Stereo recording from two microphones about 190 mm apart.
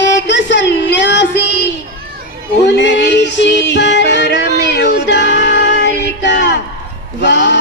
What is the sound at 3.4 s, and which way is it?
Music, 70° left (ahead or behind).